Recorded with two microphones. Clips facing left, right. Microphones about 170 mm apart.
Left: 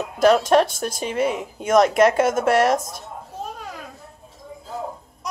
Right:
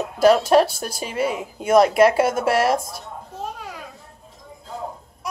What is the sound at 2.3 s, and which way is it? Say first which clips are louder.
Speech: left 1 dB; 50° left (ahead or behind).